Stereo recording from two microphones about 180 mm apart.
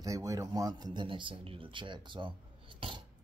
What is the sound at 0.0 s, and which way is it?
Speech, 20° right (ahead or behind).